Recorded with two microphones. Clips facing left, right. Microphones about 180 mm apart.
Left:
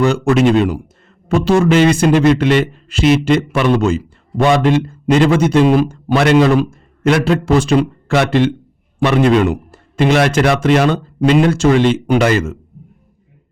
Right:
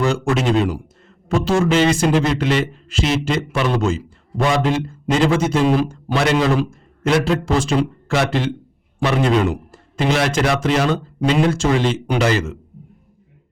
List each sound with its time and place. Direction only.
0.0 s speech: 65° left (ahead or behind)